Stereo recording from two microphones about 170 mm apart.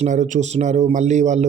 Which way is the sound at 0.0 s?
45° right (ahead or behind).